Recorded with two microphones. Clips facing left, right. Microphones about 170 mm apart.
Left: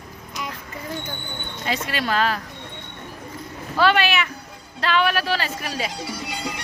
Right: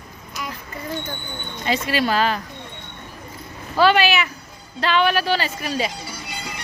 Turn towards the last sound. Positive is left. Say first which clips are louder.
# left 4 dB
turn(degrees=90)